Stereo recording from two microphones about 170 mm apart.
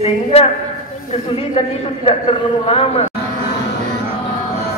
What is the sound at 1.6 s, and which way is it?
A man's voice, 35° left (ahead or behind).